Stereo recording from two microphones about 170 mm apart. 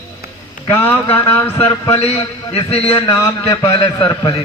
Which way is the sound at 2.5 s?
35° left (ahead or behind).